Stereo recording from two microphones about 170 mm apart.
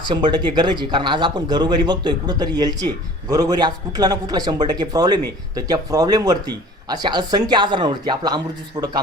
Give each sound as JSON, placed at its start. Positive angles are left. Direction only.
{"t": 0.0, "sound": "speech", "side_deg": -25}
{"t": 8.8, "sound": "a man's voice", "side_deg": -35}